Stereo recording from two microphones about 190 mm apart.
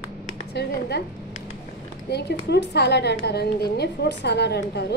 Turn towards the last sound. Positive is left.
turn(degrees=60)  # may be behind; listen again after turning